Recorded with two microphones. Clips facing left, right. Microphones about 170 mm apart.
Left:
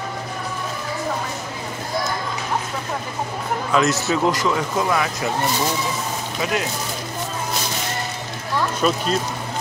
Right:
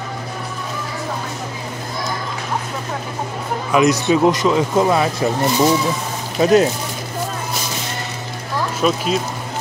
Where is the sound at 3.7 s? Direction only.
15° right (ahead or behind).